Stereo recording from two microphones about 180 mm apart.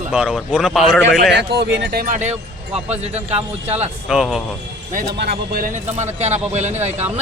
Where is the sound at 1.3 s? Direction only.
70° right (ahead or behind).